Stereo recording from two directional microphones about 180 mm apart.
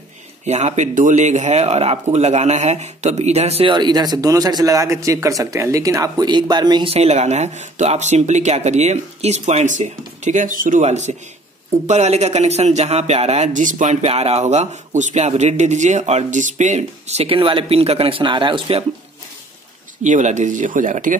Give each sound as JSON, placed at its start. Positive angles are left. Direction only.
{"t": 0.5, "sound": "speech", "side_deg": -40}
{"t": 20.0, "sound": "speech", "side_deg": -40}